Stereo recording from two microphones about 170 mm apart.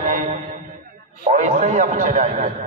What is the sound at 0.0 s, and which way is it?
Mantra, 45° right (ahead or behind).